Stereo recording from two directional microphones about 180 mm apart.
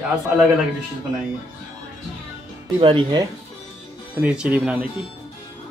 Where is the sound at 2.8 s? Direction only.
30° right (ahead or behind).